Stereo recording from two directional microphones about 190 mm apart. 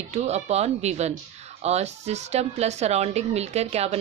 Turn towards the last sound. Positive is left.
turn(degrees=-35)  # may be behind; listen again after turning